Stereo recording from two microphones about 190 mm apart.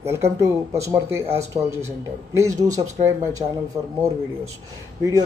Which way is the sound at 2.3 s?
15° right (ahead or behind).